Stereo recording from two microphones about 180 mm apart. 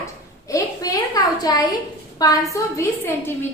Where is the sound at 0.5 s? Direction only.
20° left (ahead or behind).